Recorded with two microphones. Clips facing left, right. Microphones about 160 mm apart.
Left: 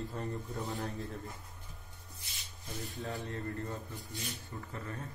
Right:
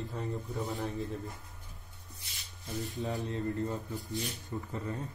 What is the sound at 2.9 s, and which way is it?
Speech, 20° right (ahead or behind).